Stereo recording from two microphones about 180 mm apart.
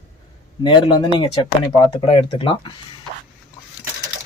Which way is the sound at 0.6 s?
25° left (ahead or behind).